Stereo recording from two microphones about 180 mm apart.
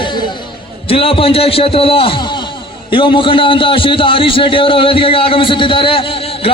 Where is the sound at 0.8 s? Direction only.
30° left (ahead or behind).